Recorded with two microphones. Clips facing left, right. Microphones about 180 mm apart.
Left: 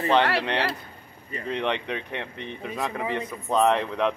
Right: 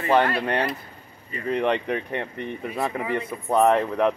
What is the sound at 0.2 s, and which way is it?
Speech, 75° left (ahead or behind).